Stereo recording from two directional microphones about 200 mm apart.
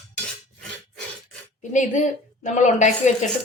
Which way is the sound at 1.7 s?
40° left (ahead or behind).